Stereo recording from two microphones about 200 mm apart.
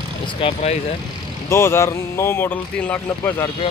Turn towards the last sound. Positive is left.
turn(degrees=10)  # may be behind; listen again after turning